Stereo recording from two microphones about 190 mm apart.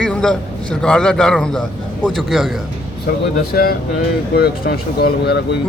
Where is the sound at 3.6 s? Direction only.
50° left (ahead or behind).